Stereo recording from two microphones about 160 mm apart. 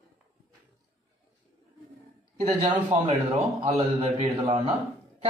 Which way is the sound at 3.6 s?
35° right (ahead or behind).